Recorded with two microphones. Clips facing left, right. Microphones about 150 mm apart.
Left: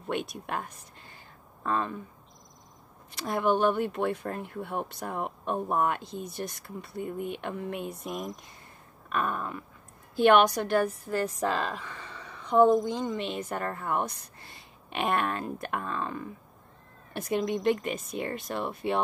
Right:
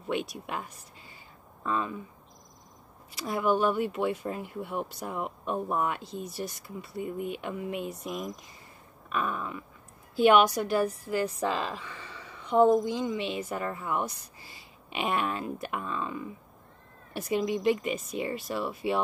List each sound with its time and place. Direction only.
0.0 s speech: centre (ahead or behind)
0.5 s speech: 50° left (ahead or behind)
3.1 s speech: centre (ahead or behind)
4.6 s speech: 55° left (ahead or behind)
5.2 s speech: centre (ahead or behind)
10.2 s a woman's voice: 55° left (ahead or behind)
10.9 s speech: centre (ahead or behind)
11.9 s a sound: 5° right (ahead or behind)
13.2 s speech: 5° right (ahead or behind)
13.5 s speech: 50° left (ahead or behind)
14.5 s speech: 5° right (ahead or behind)
15.7 s speech: 50° left (ahead or behind)
17.1 s speech: centre (ahead or behind)